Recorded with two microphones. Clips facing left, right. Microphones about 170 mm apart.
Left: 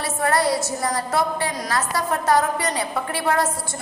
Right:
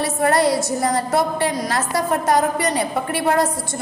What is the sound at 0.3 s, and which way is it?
Speech, 20° right (ahead or behind).